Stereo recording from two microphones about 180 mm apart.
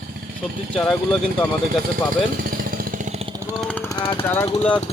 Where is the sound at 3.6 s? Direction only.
10° left (ahead or behind).